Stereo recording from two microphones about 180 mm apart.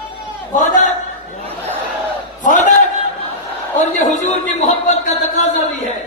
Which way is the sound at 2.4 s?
45° left (ahead or behind).